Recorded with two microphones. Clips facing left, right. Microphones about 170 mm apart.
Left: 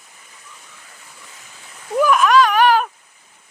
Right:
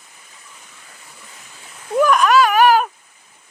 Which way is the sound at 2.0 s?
Centre (ahead or behind).